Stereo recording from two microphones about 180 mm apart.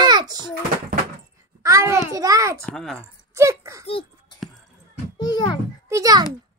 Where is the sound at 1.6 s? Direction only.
15° right (ahead or behind).